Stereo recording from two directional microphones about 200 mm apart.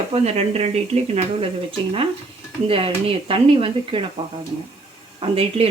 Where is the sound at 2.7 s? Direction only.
25° right (ahead or behind).